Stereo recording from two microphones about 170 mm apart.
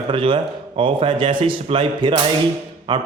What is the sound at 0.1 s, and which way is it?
A man's voice, 30° right (ahead or behind).